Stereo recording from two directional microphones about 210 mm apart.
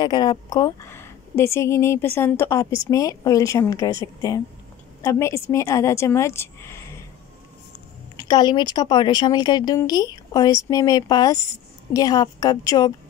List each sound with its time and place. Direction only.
0.0 s a woman's voice: 20° left (ahead or behind)
8.2 s a woman's voice: 20° left (ahead or behind)